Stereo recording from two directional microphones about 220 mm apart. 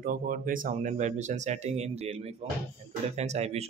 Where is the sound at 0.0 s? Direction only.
40° right (ahead or behind).